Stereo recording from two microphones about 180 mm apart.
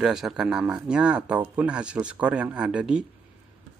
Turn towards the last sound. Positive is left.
turn(degrees=-5)  # may be behind; listen again after turning